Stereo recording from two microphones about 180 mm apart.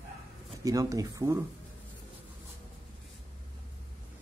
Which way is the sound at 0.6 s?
20° right (ahead or behind).